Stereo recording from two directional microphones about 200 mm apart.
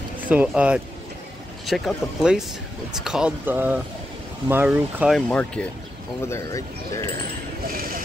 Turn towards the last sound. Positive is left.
turn(degrees=-45)  # may be behind; listen again after turning